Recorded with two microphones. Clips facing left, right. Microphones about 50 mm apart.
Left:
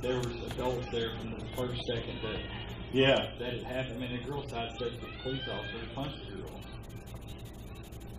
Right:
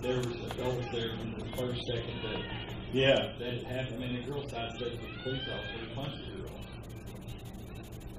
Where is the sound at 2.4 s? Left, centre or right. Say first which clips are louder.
Right 2 dB; centre.